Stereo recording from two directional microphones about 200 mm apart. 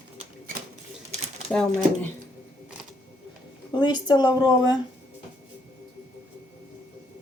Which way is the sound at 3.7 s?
20° left (ahead or behind).